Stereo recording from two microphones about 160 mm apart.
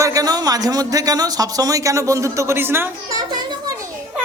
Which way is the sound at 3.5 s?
25° right (ahead or behind).